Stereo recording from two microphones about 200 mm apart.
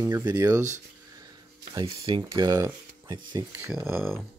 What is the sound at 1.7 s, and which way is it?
Speech, 25° right (ahead or behind).